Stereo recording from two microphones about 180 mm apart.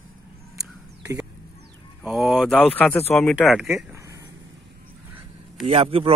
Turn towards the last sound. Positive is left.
turn(degrees=-30)  # may be behind; listen again after turning